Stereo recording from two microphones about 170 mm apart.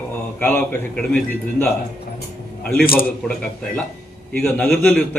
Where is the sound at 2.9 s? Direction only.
60° left (ahead or behind).